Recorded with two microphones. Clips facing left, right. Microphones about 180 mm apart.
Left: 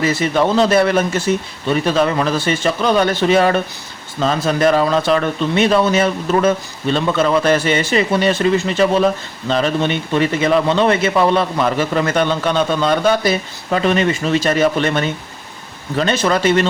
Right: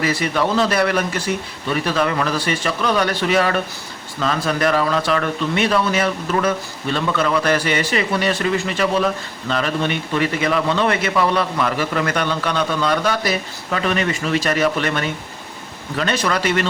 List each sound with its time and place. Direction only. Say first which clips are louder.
0.0 s a man's voice: left 4 dB; 25° left (ahead or behind)